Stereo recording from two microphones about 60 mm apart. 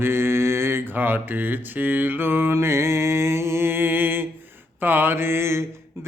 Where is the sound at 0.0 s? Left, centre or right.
Right.